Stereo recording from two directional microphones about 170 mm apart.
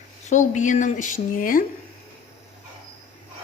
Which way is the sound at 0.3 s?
50° left (ahead or behind).